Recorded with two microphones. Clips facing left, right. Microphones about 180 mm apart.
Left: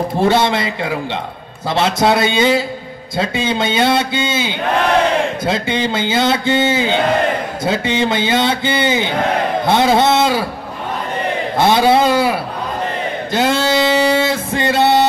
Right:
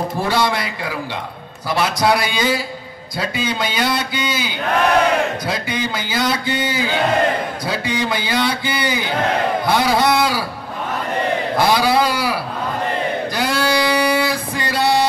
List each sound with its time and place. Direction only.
0.2 s a man's voice: 25° left (ahead or behind)
11.5 s a man's voice: 25° left (ahead or behind)
13.3 s a sound: 25° left (ahead or behind)